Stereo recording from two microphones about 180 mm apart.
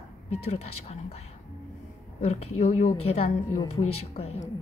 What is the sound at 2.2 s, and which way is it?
A woman's voice, 35° left (ahead or behind).